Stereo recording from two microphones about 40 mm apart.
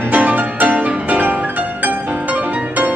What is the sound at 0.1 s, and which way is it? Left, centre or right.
Music, right.